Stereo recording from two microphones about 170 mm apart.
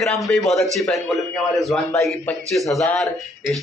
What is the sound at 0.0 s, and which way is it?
A man's voice, 5° left (ahead or behind).